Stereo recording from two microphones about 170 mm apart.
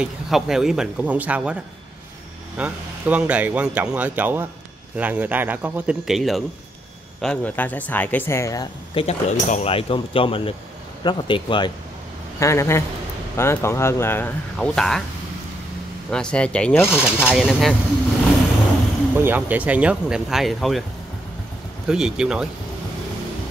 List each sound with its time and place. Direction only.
0.0 s speech: 5° right (ahead or behind); by 8.6 s 15° left (ahead or behind)
8.9 s a man's voice: 40° left (ahead or behind)
12.4 s speech: 15° left (ahead or behind)
16.1 s speech: 5° left (ahead or behind)
16.9 s speech: 5° right (ahead or behind)
19.1 s speech: 10° right (ahead or behind)
21.8 s speech: 5° right (ahead or behind)